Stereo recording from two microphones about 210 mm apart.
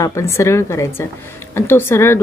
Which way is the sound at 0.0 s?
15° left (ahead or behind).